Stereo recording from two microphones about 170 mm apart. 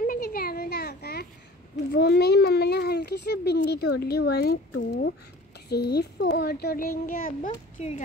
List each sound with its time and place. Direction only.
0.0 s a sound: 60° left (ahead or behind)
1.9 s a child's voice: 70° left (ahead or behind)
7.8 s speech: 40° left (ahead or behind)